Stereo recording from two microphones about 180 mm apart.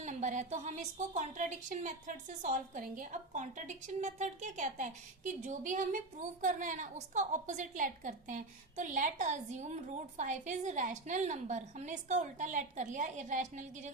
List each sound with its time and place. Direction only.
0.0 s a woman's voice: 40° right (ahead or behind)